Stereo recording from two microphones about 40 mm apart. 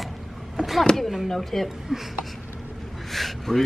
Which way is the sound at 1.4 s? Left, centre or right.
Centre.